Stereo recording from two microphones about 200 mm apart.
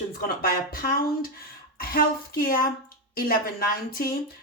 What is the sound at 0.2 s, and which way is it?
Speech, 50° left (ahead or behind).